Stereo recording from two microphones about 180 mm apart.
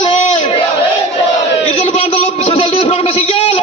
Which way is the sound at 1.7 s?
35° left (ahead or behind).